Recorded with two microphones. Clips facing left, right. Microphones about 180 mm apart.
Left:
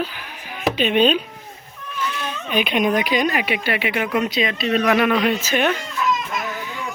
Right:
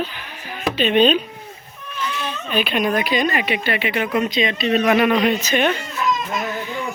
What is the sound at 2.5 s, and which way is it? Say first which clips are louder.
A woman's voice: left 1 dB; 15° left (ahead or behind).